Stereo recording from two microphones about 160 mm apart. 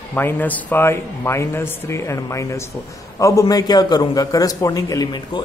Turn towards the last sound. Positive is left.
turn(degrees=25)  # may be behind; listen again after turning